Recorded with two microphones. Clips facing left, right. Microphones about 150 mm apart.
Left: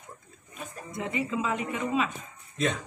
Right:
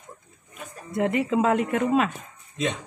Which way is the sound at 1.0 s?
65° right (ahead or behind).